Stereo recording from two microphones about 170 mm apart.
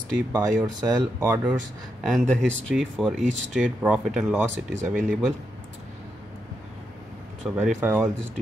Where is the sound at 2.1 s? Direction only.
Centre (ahead or behind).